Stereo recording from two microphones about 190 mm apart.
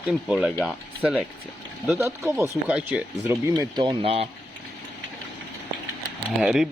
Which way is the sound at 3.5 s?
20° right (ahead or behind).